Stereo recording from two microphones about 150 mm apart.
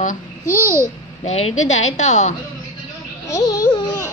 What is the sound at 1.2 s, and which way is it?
A woman's voice, 50° left (ahead or behind).